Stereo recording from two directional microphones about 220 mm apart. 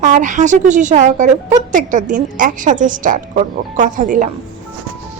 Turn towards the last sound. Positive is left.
turn(degrees=-35)  # may be behind; listen again after turning